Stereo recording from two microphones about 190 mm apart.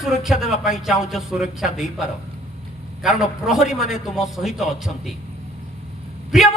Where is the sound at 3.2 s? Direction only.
5° right (ahead or behind).